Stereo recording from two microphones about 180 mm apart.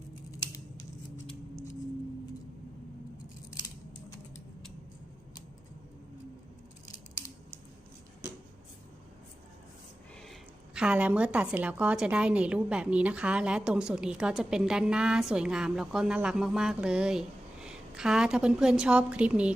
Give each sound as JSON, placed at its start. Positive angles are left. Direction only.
{"t": 10.8, "sound": "a woman's voice", "side_deg": -5}